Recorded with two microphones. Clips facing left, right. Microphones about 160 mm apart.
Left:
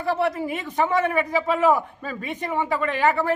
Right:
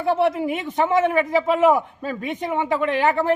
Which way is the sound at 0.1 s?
20° right (ahead or behind).